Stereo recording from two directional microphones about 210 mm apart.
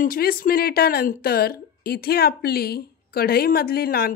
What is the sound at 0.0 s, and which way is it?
Speech, 45° left (ahead or behind).